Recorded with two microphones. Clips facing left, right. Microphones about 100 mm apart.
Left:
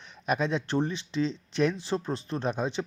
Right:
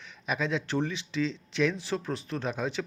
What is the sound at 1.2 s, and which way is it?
Speech, 45° left (ahead or behind).